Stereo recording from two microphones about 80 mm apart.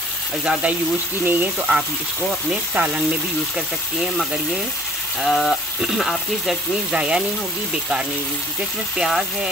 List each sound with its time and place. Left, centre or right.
0.5 s speech: centre
3.5 s speech: centre
8.9 s speech: centre